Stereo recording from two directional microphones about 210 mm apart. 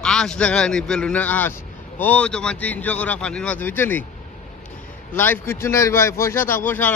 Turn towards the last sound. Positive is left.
turn(degrees=10)  # may be behind; listen again after turning